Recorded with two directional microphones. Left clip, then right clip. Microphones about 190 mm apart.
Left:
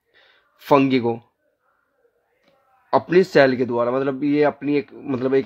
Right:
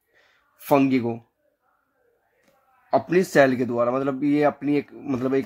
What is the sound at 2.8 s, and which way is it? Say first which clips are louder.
Speech: left 4 dB; 15° left (ahead or behind).